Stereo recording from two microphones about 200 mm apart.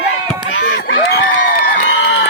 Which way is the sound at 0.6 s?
60° left (ahead or behind).